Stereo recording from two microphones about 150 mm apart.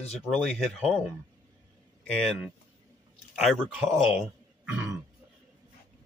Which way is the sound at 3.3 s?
Centre (ahead or behind).